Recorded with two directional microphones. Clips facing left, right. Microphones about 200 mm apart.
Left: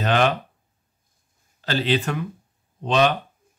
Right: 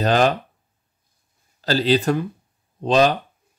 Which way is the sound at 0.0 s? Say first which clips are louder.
Right 3 dB; 35° right (ahead or behind).